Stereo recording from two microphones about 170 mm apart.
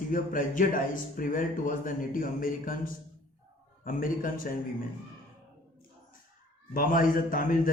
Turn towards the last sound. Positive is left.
turn(degrees=55)  # may be behind; listen again after turning